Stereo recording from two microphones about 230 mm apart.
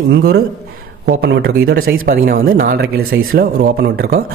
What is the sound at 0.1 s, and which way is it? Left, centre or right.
Speech, right.